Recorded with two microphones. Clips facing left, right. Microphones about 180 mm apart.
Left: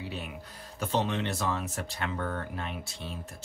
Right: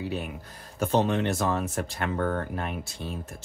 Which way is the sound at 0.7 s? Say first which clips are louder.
Right 5 dB; 50° right (ahead or behind).